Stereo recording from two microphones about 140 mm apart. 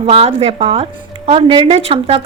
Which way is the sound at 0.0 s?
45° right (ahead or behind).